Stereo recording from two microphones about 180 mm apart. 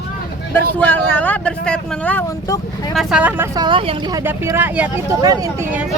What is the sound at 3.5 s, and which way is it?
Speech, 25° right (ahead or behind).